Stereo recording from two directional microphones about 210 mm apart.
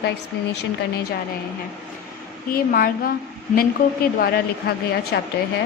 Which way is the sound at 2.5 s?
45° left (ahead or behind).